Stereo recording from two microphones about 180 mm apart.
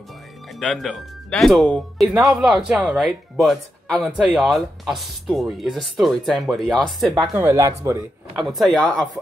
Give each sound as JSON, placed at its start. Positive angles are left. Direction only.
{"t": 0.6, "sound": "speech", "side_deg": 5}
{"t": 7.3, "sound": "speech", "side_deg": -15}
{"t": 8.4, "sound": "speech", "side_deg": 0}